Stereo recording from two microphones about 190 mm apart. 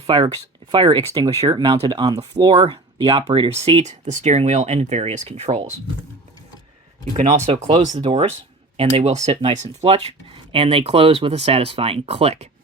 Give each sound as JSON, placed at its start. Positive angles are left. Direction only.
{"t": 0.1, "sound": "speech", "side_deg": -25}
{"t": 7.2, "sound": "speech", "side_deg": -35}